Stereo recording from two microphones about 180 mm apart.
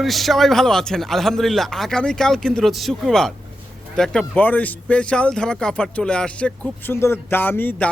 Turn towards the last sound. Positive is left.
turn(degrees=10)  # may be behind; listen again after turning